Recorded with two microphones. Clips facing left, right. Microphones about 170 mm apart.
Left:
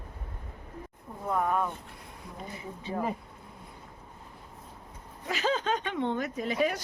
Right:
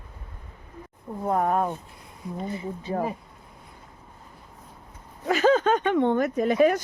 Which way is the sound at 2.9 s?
45° right (ahead or behind).